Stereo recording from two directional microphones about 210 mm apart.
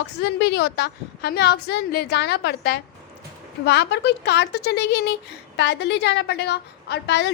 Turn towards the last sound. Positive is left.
turn(degrees=55)  # may be behind; listen again after turning